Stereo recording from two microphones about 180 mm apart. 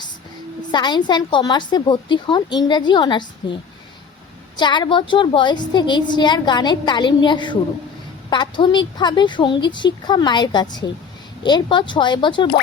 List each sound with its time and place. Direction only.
0.7 s a woman's voice: 25° left (ahead or behind)